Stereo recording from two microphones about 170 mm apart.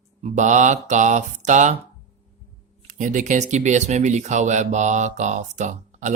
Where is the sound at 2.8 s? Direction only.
45° right (ahead or behind).